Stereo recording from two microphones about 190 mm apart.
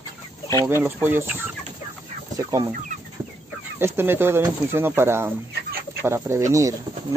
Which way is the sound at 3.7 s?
10° right (ahead or behind).